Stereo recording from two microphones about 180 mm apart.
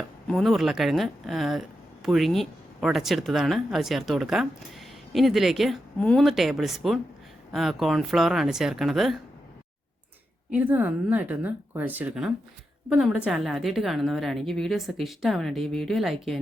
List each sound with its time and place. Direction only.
0.3 s speech: centre (ahead or behind)
10.5 s speech: 10° right (ahead or behind)